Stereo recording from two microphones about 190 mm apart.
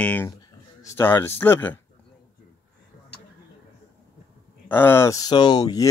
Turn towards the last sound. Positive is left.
turn(degrees=20)  # may be behind; listen again after turning